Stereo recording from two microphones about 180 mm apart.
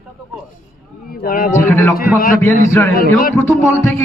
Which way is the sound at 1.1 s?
55° left (ahead or behind).